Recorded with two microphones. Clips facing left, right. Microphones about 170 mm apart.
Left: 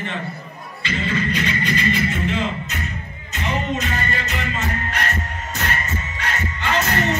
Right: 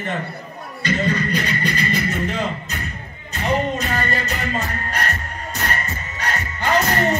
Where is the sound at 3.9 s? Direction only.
40° right (ahead or behind).